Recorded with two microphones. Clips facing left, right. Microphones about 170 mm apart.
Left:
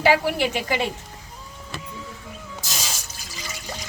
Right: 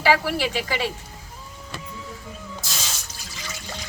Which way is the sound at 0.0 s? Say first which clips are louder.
Left 2 dB; 20° left (ahead or behind).